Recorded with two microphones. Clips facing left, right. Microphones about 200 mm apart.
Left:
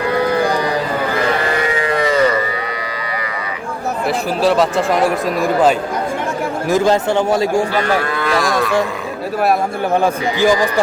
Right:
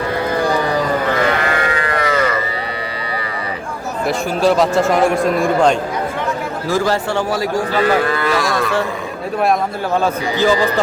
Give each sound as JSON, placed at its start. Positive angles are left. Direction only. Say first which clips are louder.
{"t": 1.9, "sound": "livestock", "louder": "left 2 dB", "side_deg": 25}
{"t": 4.0, "sound": "speech", "louder": "right 1 dB", "side_deg": 0}
{"t": 6.7, "sound": "a man's voice", "louder": "left 3 dB", "side_deg": 20}
{"t": 8.1, "sound": "livestock", "louder": "even", "side_deg": 0}
{"t": 9.9, "sound": "speech", "louder": "left 1 dB", "side_deg": 15}